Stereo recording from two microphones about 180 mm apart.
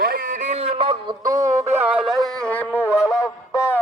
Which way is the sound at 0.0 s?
50° right (ahead or behind).